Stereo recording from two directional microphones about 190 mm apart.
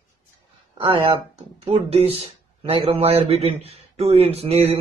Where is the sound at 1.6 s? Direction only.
30° right (ahead or behind).